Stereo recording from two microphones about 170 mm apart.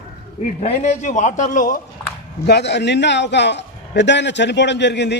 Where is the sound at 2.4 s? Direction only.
85° left.